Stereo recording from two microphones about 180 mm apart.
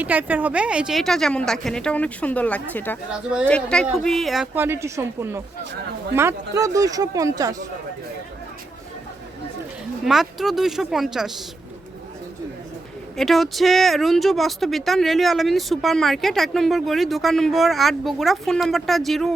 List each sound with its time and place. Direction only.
0.0 s speech: 10° right (ahead or behind); by 3.0 s 10° left (ahead or behind)
3.1 s speech: 5° right (ahead or behind)
3.4 s speech: 5° left (ahead or behind)
4.5 s speech: 15° right (ahead or behind)
10.0 s speech: centre (ahead or behind)
13.1 s speech: centre (ahead or behind)